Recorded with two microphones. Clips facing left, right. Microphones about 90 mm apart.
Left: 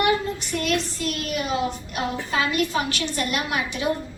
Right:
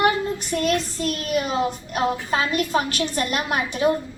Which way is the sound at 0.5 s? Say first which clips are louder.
Right 3 dB; 40° right (ahead or behind).